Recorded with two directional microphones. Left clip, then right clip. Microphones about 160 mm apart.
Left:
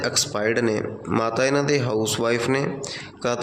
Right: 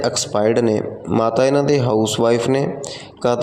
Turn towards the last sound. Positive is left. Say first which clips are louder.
# right 6 dB
turn(degrees=-30)  # may be behind; listen again after turning